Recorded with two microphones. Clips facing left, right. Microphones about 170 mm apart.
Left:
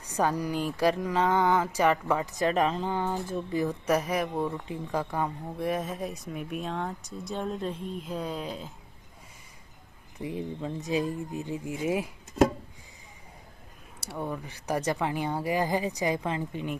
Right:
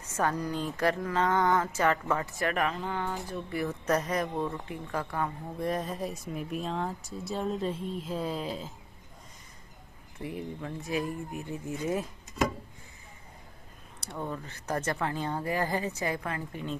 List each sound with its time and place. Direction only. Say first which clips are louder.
0.0 s speech: left 2 dB; 15° left (ahead or behind)
5.6 s speech: left 1 dB; centre (ahead or behind)
10.1 s speech: left 3 dB; 20° left (ahead or behind)
13.9 s speech: left 2 dB; 10° left (ahead or behind)